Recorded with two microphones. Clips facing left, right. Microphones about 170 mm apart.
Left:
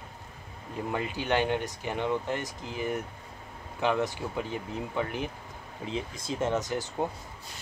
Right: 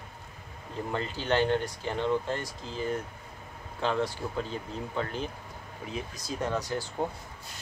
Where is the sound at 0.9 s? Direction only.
15° left (ahead or behind).